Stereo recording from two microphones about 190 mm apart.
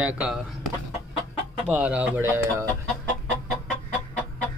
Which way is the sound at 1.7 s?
5° right (ahead or behind).